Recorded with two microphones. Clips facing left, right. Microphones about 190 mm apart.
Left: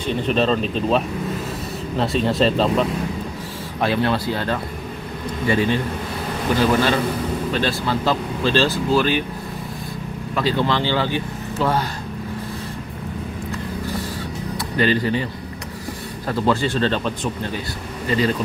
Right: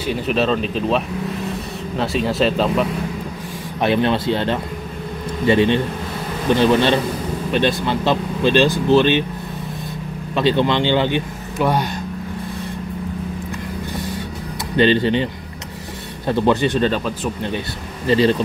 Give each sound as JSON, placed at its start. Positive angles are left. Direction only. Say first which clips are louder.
{"t": 0.0, "sound": "speech", "louder": "even", "side_deg": -5}
{"t": 3.8, "sound": "speech", "louder": "right 3 dB", "side_deg": -20}
{"t": 10.3, "sound": "speech", "louder": "right 4 dB", "side_deg": -25}
{"t": 14.8, "sound": "speech", "louder": "right 4 dB", "side_deg": -25}
{"t": 16.3, "sound": "speech", "louder": "right 3 dB", "side_deg": -20}
{"t": 18.0, "sound": "speech", "louder": "right 5 dB", "side_deg": -30}